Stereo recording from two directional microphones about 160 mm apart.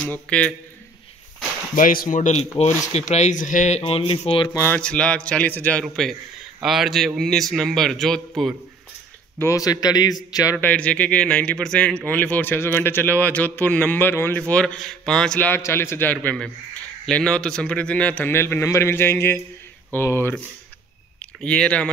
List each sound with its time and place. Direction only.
0.0 s a man's voice: 5° left (ahead or behind)
1.8 s speech: 60° left (ahead or behind); by 4.5 s 35° left (ahead or behind)
4.6 s a man's voice: 10° left (ahead or behind)
9.4 s a man's voice: 20° left (ahead or behind)
10.6 s a man's voice: 10° left (ahead or behind)